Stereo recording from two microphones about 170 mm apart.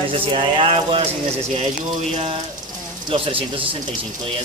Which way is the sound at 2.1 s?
35° right (ahead or behind).